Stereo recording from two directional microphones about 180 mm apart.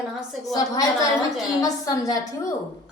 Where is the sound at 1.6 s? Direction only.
20° left (ahead or behind).